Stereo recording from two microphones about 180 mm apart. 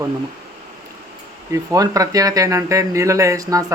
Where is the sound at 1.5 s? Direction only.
20° right (ahead or behind).